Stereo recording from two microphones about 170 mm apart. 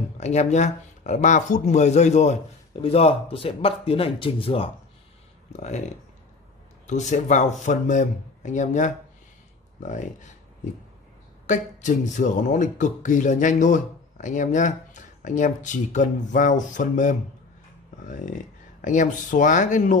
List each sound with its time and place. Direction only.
0.2 s speech: 40° left (ahead or behind)
6.9 s speech: 45° left (ahead or behind)